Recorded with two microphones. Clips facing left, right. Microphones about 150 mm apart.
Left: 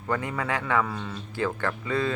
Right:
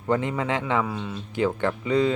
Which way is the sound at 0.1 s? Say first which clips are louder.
Right 4 dB; 20° right (ahead or behind).